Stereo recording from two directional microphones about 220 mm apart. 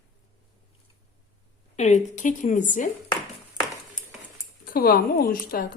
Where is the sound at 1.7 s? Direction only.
30° left (ahead or behind).